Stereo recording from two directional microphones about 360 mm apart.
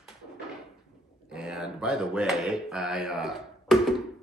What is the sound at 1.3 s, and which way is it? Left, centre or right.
Speech, centre.